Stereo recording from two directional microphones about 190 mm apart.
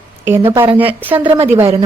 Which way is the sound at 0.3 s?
10° right (ahead or behind).